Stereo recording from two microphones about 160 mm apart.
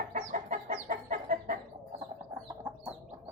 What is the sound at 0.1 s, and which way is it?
Chicken, 50° right (ahead or behind).